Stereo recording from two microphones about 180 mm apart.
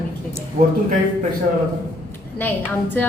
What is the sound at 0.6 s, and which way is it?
Speech, 50° right (ahead or behind).